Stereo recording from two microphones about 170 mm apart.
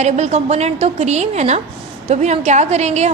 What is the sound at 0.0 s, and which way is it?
A woman's voice, 40° right (ahead or behind).